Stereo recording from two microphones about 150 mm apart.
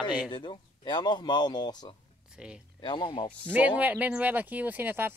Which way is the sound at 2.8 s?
30° left (ahead or behind).